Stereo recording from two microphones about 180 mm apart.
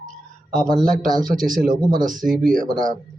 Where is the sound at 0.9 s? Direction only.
50° right (ahead or behind).